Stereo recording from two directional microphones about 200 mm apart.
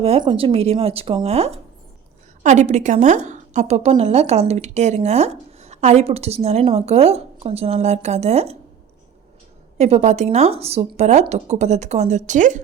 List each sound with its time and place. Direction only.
0.0 s a woman's voice: 30° right (ahead or behind)
9.7 s a woman's voice: 35° right (ahead or behind)